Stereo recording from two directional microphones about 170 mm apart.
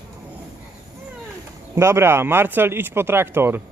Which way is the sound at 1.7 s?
15° right (ahead or behind).